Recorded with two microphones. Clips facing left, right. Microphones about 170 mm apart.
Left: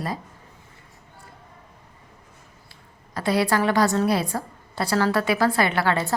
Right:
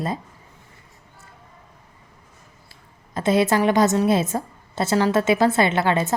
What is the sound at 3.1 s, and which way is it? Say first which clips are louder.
A woman's voice: right 3 dB; 20° right (ahead or behind).